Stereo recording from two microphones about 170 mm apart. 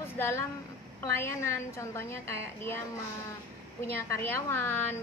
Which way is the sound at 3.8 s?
10° left (ahead or behind).